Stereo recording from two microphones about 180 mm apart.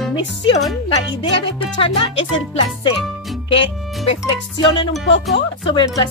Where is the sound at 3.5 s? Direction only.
30° left (ahead or behind).